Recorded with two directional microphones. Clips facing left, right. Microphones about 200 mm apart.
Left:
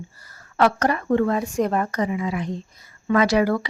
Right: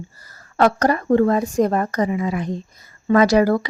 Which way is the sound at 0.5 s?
40° right (ahead or behind).